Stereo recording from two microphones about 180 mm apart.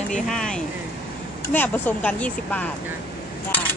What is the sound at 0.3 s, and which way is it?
Speech, 5° left (ahead or behind).